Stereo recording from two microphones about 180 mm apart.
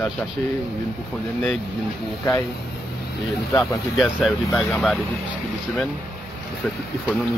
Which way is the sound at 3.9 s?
5° right (ahead or behind).